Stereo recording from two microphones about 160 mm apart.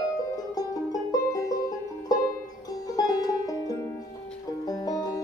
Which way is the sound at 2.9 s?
25° left (ahead or behind).